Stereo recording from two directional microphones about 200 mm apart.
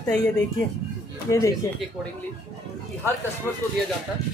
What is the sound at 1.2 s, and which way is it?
Speech, 15° left (ahead or behind).